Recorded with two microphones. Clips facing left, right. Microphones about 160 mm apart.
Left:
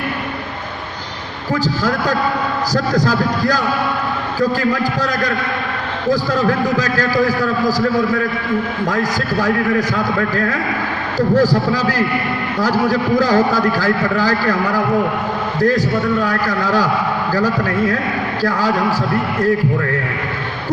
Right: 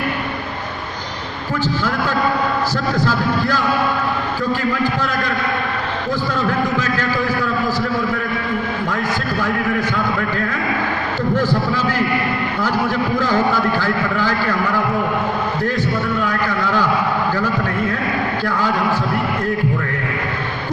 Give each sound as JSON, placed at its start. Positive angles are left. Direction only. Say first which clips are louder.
{"t": 2.7, "sound": "a man's voice", "louder": "left 3 dB", "side_deg": 40}
{"t": 11.3, "sound": "a man's voice", "louder": "left 5 dB", "side_deg": 35}